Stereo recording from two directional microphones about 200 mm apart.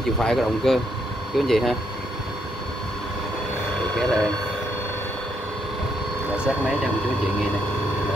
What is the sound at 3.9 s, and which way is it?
Vehicle, 5° left (ahead or behind).